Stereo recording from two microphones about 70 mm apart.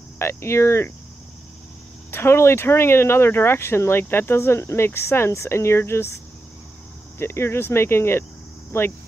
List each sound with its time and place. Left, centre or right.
0.2 s speech: left
2.0 s speech: left
7.2 s speech: left